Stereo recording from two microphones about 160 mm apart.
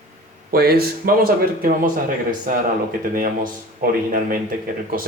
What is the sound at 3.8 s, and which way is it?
Speech, 65° right (ahead or behind).